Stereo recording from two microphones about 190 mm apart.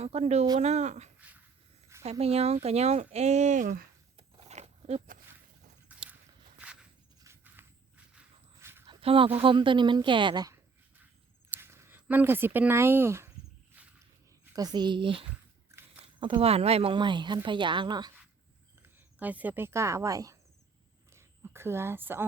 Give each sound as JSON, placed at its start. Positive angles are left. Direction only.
{"t": 0.0, "sound": "speech", "side_deg": -35}
{"t": 4.2, "sound": "wild animals", "side_deg": -30}
{"t": 5.9, "sound": "horse", "side_deg": -10}
{"t": 7.3, "sound": "walk", "side_deg": -10}
{"t": 8.9, "sound": "speech", "side_deg": -30}
{"t": 13.7, "sound": "a sound", "side_deg": -10}
{"t": 14.5, "sound": "speech", "side_deg": -20}
{"t": 15.7, "sound": "a sound", "side_deg": -15}
{"t": 16.2, "sound": "speech", "side_deg": -30}
{"t": 18.8, "sound": "speech", "side_deg": -10}
{"t": 21.1, "sound": "a sound", "side_deg": -15}